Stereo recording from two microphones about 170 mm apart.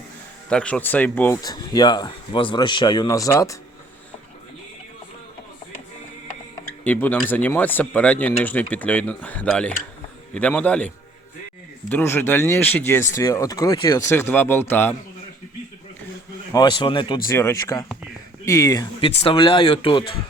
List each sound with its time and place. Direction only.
0.5 s speech: 5° left (ahead or behind)
1.4 s speech: 25° left (ahead or behind)
6.8 s speech: 10° left (ahead or behind)
16.5 s speech: 25° left (ahead or behind)
17.2 s speech: 15° left (ahead or behind)
18.9 s speech: 35° left (ahead or behind)